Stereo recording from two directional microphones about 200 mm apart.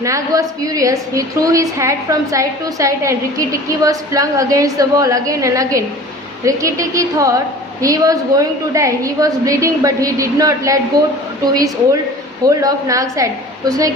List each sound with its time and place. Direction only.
0.0 s a woman's voice: 15° right (ahead or behind)